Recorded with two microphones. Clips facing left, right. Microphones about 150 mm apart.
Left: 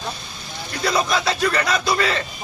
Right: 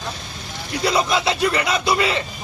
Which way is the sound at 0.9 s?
15° right (ahead or behind).